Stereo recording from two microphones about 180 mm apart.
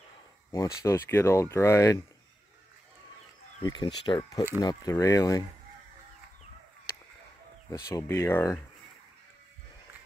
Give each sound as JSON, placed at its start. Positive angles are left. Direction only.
{"t": 0.5, "sound": "speech", "side_deg": 15}
{"t": 3.6, "sound": "speech", "side_deg": 25}
{"t": 7.9, "sound": "speech", "side_deg": 15}